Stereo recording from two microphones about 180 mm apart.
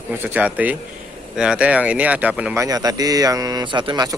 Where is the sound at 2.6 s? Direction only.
20° right (ahead or behind).